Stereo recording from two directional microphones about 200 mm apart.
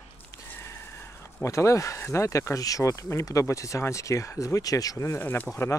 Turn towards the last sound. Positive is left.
turn(degrees=15)  # may be behind; listen again after turning